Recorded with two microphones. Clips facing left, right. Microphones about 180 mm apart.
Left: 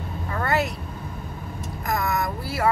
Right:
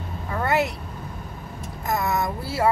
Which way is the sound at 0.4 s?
20° right (ahead or behind).